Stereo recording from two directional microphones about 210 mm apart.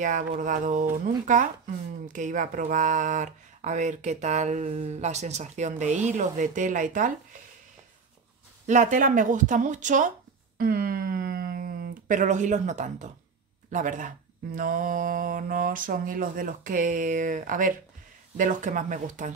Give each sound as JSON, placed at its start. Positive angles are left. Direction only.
{"t": 0.0, "sound": "speech", "side_deg": -35}
{"t": 8.6, "sound": "speech", "side_deg": -35}